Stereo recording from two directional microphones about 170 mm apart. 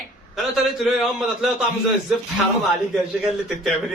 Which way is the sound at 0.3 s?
Centre (ahead or behind).